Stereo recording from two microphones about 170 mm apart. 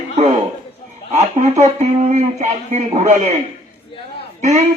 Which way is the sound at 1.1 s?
40° right (ahead or behind).